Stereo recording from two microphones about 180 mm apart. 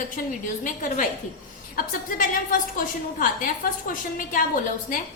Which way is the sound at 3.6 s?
50° left (ahead or behind).